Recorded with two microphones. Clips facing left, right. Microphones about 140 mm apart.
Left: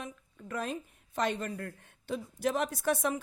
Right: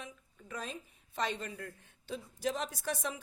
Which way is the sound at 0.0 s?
55° left (ahead or behind).